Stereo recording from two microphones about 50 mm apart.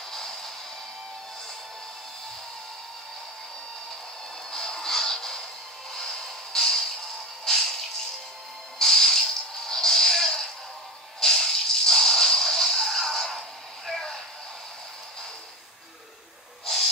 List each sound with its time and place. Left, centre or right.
0.1 s music: centre
4.5 s music: centre
5.9 s a sound: centre
8.7 s a sound: centre
11.1 s music: centre
16.6 s owl: centre